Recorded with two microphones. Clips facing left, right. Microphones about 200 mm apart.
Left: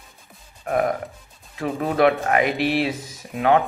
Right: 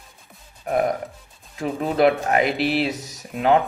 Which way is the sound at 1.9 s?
35° right (ahead or behind).